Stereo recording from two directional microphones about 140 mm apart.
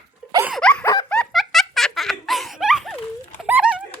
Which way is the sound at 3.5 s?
10° right (ahead or behind).